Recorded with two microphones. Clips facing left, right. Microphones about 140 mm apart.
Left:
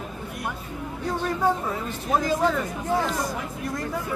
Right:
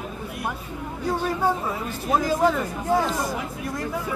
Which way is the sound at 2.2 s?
5° right (ahead or behind).